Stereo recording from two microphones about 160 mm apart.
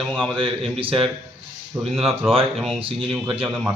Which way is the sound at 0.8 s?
35° right (ahead or behind).